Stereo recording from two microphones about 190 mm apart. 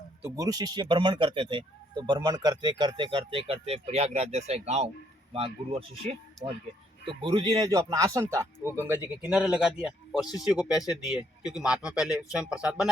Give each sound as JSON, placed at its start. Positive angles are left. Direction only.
{"t": 0.2, "sound": "speech", "side_deg": -15}